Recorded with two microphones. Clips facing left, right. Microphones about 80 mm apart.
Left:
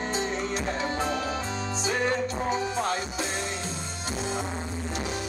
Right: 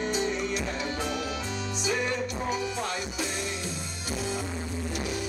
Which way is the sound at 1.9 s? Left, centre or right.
Left.